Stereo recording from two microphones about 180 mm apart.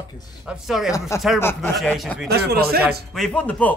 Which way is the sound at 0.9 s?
15° left (ahead or behind).